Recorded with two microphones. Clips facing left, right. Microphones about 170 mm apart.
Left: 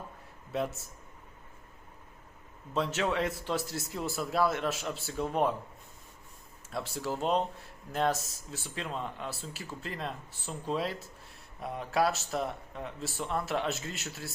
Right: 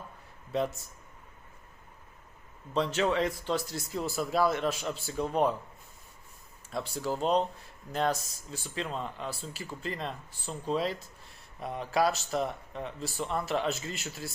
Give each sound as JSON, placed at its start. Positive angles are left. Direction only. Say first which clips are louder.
{"t": 0.5, "sound": "speech", "louder": "right 2 dB", "side_deg": 5}
{"t": 2.7, "sound": "speech", "louder": "right 2 dB", "side_deg": 5}
{"t": 6.7, "sound": "speech", "louder": "right 2 dB", "side_deg": 5}